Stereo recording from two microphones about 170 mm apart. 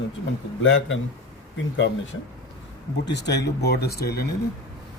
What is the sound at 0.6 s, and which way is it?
Speech, 90° left.